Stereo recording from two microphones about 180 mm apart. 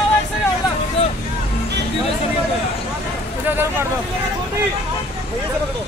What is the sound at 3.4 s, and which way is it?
Speech, 10° right (ahead or behind).